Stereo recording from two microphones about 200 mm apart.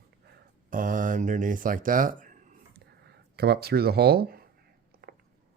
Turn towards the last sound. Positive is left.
turn(degrees=-50)  # may be behind; listen again after turning